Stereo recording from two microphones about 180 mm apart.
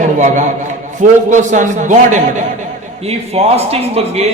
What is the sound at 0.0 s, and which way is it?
A man's voice, 40° right (ahead or behind).